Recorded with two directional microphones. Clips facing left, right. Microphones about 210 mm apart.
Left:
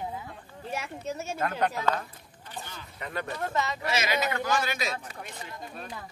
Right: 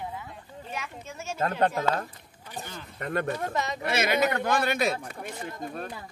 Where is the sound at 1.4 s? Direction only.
30° right (ahead or behind).